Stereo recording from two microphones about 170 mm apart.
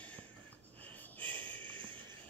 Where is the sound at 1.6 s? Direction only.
30° right (ahead or behind).